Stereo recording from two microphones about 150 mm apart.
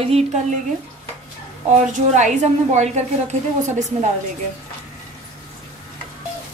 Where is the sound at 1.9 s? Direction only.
55° right (ahead or behind).